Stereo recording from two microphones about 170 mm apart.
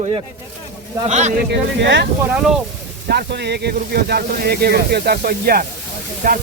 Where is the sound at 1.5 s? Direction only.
85° right.